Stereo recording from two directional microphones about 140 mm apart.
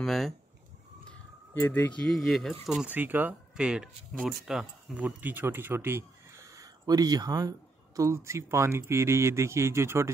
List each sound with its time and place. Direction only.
0.0 s speech: centre (ahead or behind)
1.5 s speech: 15° left (ahead or behind); by 2.9 s centre (ahead or behind)
2.9 s speech: 15° right (ahead or behind)